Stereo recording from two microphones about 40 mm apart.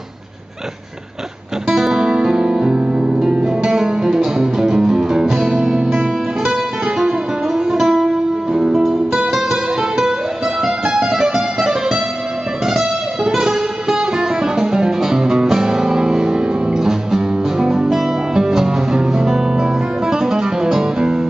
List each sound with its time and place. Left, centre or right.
1.7 s music: centre